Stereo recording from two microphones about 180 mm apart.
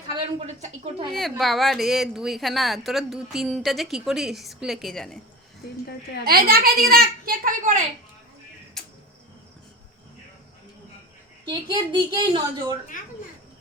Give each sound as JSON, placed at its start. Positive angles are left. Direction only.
{"t": 0.1, "sound": "a woman's voice", "side_deg": -35}
{"t": 1.1, "sound": "a woman's voice", "side_deg": 0}
{"t": 6.2, "sound": "a child's voice", "side_deg": -55}
{"t": 8.8, "sound": "insect", "side_deg": 0}
{"t": 11.4, "sound": "a woman's voice", "side_deg": -25}